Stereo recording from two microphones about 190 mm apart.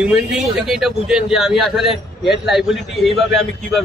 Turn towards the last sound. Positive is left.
turn(degrees=0)  # may be behind; listen again after turning